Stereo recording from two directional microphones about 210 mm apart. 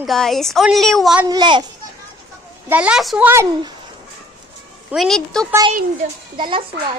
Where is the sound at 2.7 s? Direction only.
5° right (ahead or behind).